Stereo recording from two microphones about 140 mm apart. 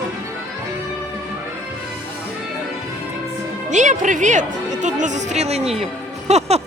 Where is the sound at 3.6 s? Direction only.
60° right (ahead or behind).